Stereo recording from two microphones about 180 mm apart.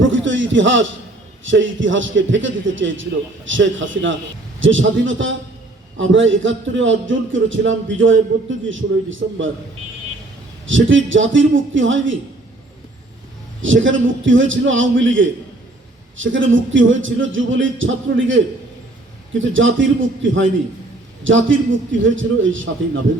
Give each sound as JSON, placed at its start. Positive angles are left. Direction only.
{"t": 0.0, "sound": "a sound", "side_deg": -90}
{"t": 1.5, "sound": "a man's voice", "side_deg": -90}
{"t": 10.7, "sound": "a man's voice", "side_deg": -90}
{"t": 13.6, "sound": "a man's voice", "side_deg": -90}